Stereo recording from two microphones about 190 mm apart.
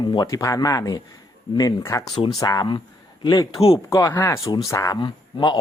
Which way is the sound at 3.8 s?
20° left (ahead or behind).